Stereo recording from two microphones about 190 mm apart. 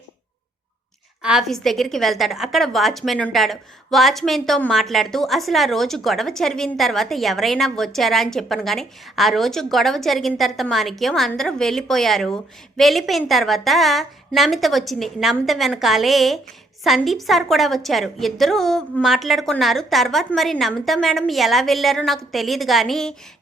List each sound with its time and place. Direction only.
1.2 s a woman's voice: 5° right (ahead or behind)